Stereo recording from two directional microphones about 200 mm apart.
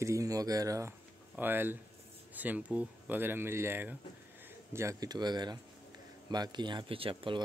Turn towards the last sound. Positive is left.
turn(degrees=-25)  # may be behind; listen again after turning